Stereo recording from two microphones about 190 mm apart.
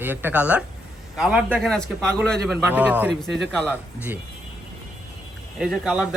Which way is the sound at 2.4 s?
10° right (ahead or behind).